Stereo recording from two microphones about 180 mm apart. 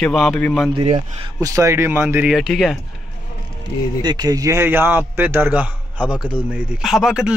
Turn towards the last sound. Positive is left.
turn(degrees=-5)  # may be behind; listen again after turning